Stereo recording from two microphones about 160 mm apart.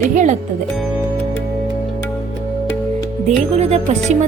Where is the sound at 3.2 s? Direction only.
45° right (ahead or behind).